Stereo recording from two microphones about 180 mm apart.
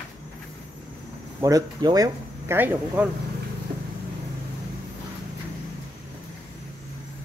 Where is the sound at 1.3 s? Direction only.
20° right (ahead or behind).